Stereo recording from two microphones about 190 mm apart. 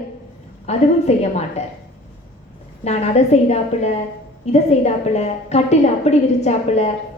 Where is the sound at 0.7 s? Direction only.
35° left (ahead or behind).